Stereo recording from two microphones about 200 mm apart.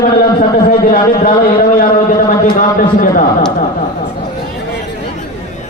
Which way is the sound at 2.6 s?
40° left (ahead or behind).